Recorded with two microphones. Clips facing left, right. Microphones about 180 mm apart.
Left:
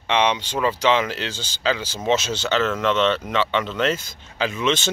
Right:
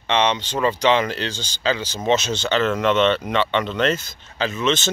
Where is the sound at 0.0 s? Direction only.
10° left (ahead or behind).